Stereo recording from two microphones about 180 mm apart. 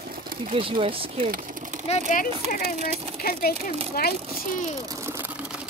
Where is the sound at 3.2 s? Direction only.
55° left (ahead or behind).